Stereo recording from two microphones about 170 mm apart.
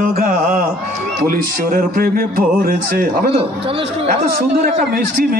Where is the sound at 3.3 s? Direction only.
35° right (ahead or behind).